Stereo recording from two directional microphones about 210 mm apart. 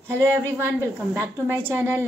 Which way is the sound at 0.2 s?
15° right (ahead or behind).